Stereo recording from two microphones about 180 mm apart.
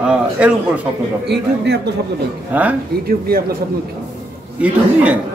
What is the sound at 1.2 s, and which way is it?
Speech, 65° right (ahead or behind).